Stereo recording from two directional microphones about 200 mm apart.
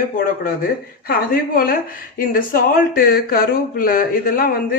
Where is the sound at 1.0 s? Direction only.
45° left (ahead or behind).